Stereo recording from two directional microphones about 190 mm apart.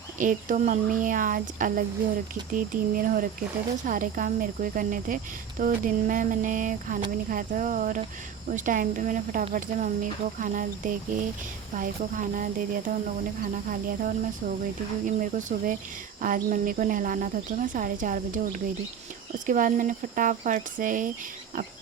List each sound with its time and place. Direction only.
0.2 s speech: 45° right (ahead or behind)